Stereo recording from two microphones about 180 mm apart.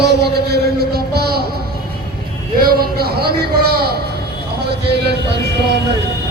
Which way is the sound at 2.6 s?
55° right (ahead or behind).